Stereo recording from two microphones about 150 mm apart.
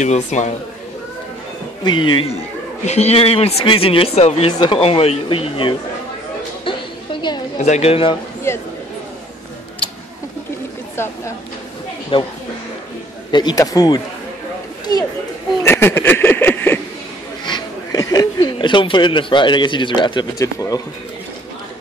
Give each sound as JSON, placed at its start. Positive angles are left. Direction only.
{"t": 0.0, "sound": "a woman's voice", "side_deg": 50}
{"t": 1.9, "sound": "speech", "side_deg": 30}
{"t": 2.8, "sound": "speech", "side_deg": 45}
{"t": 6.6, "sound": "a sound", "side_deg": 30}
{"t": 7.5, "sound": "a woman's voice", "side_deg": 50}
{"t": 11.0, "sound": "a woman's voice", "side_deg": 15}
{"t": 12.1, "sound": "speech", "side_deg": 35}
{"t": 13.3, "sound": "speech", "side_deg": 30}
{"t": 15.6, "sound": "speech", "side_deg": 15}
{"t": 17.5, "sound": "speech", "side_deg": 30}